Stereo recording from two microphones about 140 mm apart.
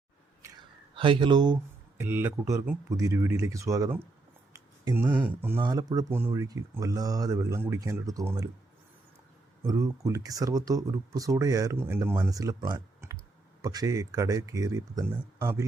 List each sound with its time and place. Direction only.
0.4 s a sound: 20° right (ahead or behind)
0.9 s speech: 40° right (ahead or behind)
2.0 s speech: 15° right (ahead or behind)
4.5 s a sound: 25° right (ahead or behind)
5.1 s speech: 15° right (ahead or behind)
5.5 s speech: 30° right (ahead or behind)
6.1 s speech: 15° right (ahead or behind)
9.6 s speech: 25° right (ahead or behind)